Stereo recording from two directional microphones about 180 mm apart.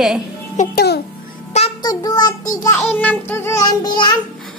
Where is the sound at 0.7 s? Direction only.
65° left (ahead or behind).